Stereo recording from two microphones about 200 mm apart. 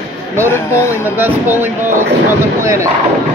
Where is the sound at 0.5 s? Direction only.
10° left (ahead or behind).